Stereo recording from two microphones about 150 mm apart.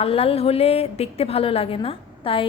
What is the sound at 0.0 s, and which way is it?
A woman's voice, 40° left (ahead or behind).